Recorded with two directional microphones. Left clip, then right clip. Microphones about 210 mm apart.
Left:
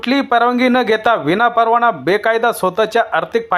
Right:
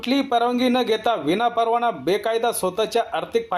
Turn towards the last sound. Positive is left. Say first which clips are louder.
# left 7 dB
turn(degrees=20)  # may be behind; listen again after turning